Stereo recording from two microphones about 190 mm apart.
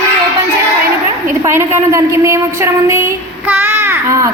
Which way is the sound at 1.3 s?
15° right (ahead or behind).